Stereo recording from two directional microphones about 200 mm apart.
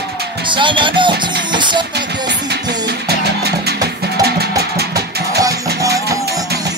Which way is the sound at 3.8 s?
55° right (ahead or behind).